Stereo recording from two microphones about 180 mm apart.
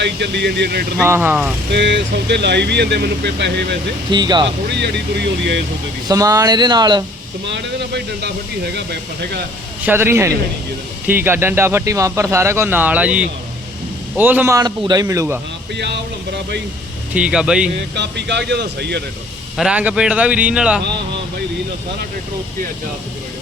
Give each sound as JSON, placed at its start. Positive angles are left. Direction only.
{"t": 0.0, "sound": "speech", "side_deg": -75}
{"t": 1.0, "sound": "speech", "side_deg": -10}
{"t": 1.7, "sound": "speech", "side_deg": -80}
{"t": 4.1, "sound": "speech", "side_deg": -25}
{"t": 4.7, "sound": "speech", "side_deg": -70}
{"t": 6.1, "sound": "speech", "side_deg": -20}
{"t": 7.4, "sound": "speech", "side_deg": -75}
{"t": 9.8, "sound": "speech", "side_deg": -10}
{"t": 17.2, "sound": "speech", "side_deg": -5}
{"t": 17.7, "sound": "speech", "side_deg": -70}
{"t": 19.5, "sound": "speech", "side_deg": -5}